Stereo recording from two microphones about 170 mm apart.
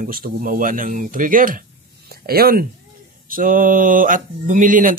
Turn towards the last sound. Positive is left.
turn(degrees=-50)  # may be behind; listen again after turning